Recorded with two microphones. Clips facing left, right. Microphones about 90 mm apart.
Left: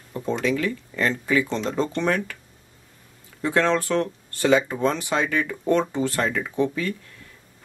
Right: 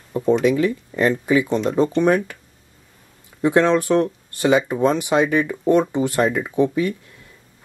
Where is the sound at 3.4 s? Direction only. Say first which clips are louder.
Right 5 dB; 20° right (ahead or behind).